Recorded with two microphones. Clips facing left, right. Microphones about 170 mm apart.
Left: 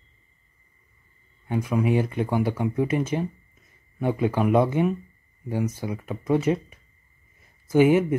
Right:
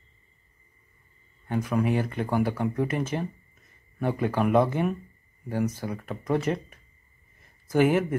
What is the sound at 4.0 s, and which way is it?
Speech, 15° left (ahead or behind).